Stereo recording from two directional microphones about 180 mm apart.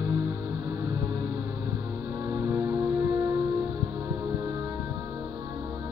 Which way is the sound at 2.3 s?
20° right (ahead or behind).